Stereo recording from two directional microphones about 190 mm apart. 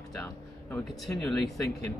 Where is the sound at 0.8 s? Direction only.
Centre (ahead or behind).